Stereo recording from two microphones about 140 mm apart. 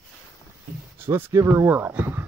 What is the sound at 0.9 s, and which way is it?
Speech, 15° right (ahead or behind).